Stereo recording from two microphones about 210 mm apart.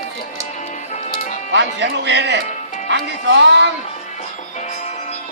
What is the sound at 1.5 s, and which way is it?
Speech, 55° right (ahead or behind).